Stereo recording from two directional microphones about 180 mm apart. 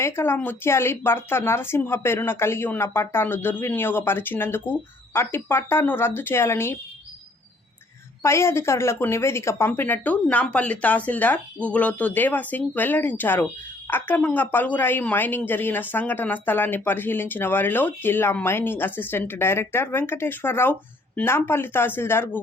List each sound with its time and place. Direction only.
0.0 s speech: 15° left (ahead or behind)
8.2 s speech: 15° left (ahead or behind)